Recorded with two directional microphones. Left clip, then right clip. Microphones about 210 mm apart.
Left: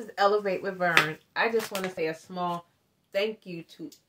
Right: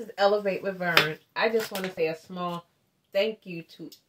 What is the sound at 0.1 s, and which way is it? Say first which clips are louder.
Speech: right 1 dB; 15° left (ahead or behind).